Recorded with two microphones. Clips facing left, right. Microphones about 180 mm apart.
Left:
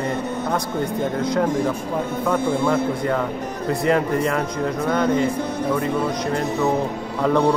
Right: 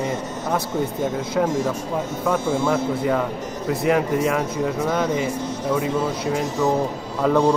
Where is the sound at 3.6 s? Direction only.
5° right (ahead or behind).